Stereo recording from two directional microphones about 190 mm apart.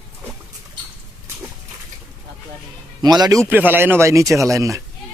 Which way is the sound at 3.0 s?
20° right (ahead or behind).